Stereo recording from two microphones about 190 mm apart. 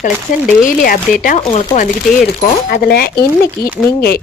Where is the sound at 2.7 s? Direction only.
55° left (ahead or behind).